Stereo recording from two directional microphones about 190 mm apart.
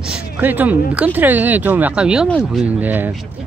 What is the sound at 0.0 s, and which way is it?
Speech, 5° right (ahead or behind).